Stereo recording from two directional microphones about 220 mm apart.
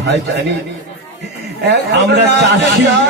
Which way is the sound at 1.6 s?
50° right (ahead or behind).